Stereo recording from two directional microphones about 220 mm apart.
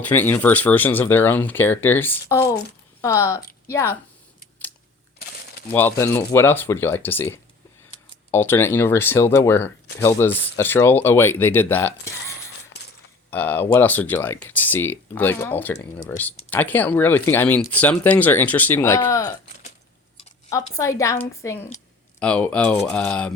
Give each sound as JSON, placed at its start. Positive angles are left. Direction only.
{"t": 0.0, "sound": "speech", "side_deg": 10}
{"t": 5.7, "sound": "speech", "side_deg": 10}
{"t": 13.3, "sound": "speech", "side_deg": 10}
{"t": 20.5, "sound": "speech", "side_deg": 15}